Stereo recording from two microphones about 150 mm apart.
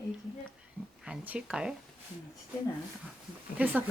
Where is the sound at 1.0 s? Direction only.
10° right (ahead or behind).